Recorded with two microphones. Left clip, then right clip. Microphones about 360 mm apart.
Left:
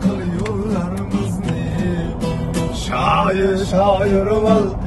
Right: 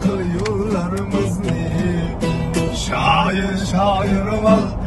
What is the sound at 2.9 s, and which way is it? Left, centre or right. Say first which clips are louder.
Mantra: left 1 dB; centre.